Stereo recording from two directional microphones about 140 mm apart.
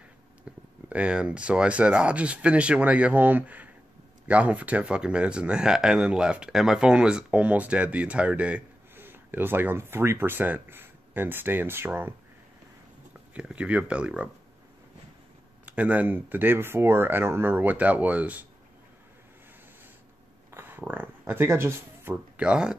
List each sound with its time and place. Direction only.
0.5 s speech: 10° right (ahead or behind)
13.3 s speech: 5° right (ahead or behind)
15.6 s speech: 10° right (ahead or behind)
20.5 s a sound: 15° right (ahead or behind)